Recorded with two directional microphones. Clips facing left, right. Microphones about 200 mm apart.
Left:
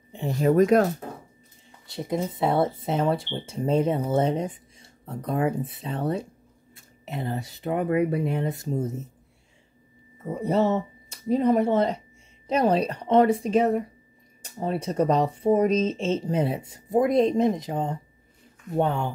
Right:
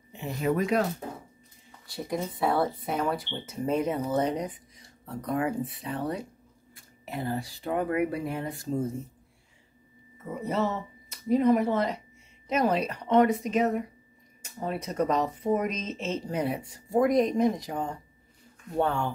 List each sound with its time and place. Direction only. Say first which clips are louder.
0.1 s speech: left 6 dB; 35° left (ahead or behind)
1.9 s speech: left 4 dB; 20° left (ahead or behind)
10.3 s a woman's voice: left 6 dB; 30° left (ahead or behind)